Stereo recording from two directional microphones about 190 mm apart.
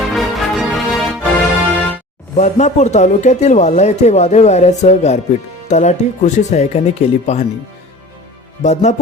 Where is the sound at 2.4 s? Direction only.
35° left (ahead or behind).